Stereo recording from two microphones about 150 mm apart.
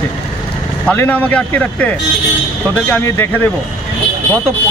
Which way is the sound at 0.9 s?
10° left (ahead or behind).